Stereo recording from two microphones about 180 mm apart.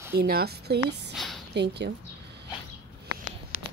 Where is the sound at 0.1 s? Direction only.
60° right (ahead or behind).